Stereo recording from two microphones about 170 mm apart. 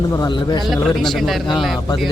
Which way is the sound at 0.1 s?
25° left (ahead or behind).